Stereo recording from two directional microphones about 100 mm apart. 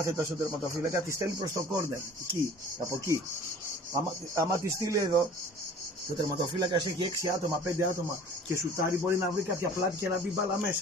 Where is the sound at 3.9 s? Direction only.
30° right (ahead or behind).